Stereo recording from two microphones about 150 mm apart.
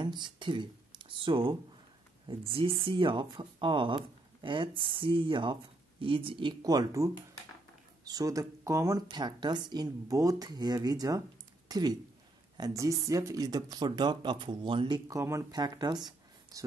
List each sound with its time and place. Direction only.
0.0 s speech: 30° right (ahead or behind)
9.0 s speech: 30° right (ahead or behind)
15.1 s speech: 20° right (ahead or behind)